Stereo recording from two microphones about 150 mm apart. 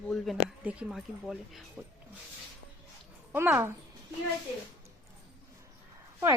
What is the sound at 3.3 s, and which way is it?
Speech, 15° right (ahead or behind).